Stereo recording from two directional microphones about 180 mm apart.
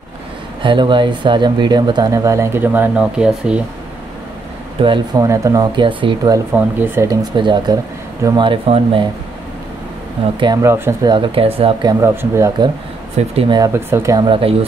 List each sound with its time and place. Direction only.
0.6 s speech: 25° right (ahead or behind); by 3.6 s 5° right (ahead or behind)
4.8 s speech: 25° right (ahead or behind)
6.5 s speech: 15° right (ahead or behind)
7.3 s speech: 25° right (ahead or behind)
10.4 s speech: 20° right (ahead or behind)
11.1 s speech: 30° right (ahead or behind)
13.3 s speech: 35° right (ahead or behind)
13.6 s speech: 15° right (ahead or behind); by 14.7 s 30° right (ahead or behind)